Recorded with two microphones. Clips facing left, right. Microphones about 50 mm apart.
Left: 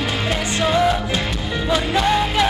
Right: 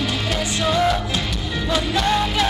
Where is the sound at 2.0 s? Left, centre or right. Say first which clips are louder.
Left 2 dB; centre.